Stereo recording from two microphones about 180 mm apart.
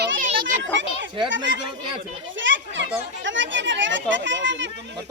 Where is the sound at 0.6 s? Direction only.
90° right.